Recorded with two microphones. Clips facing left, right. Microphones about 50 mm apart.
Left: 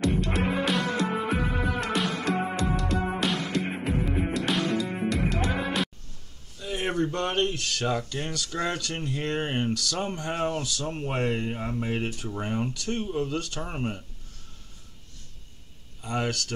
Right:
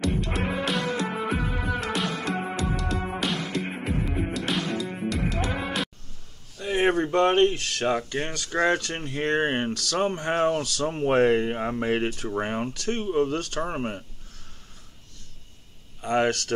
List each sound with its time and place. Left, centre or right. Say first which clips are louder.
0.0 s music: left 1 dB; centre
6.6 s speech: right 5 dB; right
11.1 s speech: right 9 dB; right
16.0 s speech: right 6 dB; right